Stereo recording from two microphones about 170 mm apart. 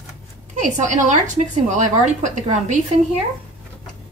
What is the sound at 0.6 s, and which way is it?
A woman's voice, 45° right (ahead or behind).